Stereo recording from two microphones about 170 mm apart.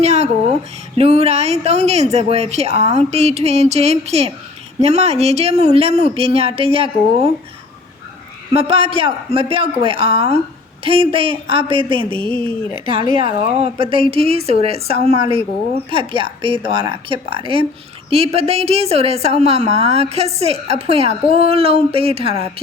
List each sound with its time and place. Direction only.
0.0 s a woman's voice: 40° right (ahead or behind)
8.5 s a woman's voice: 35° right (ahead or behind)